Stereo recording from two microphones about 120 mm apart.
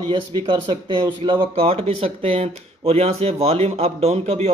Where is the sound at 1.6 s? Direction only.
55° right (ahead or behind).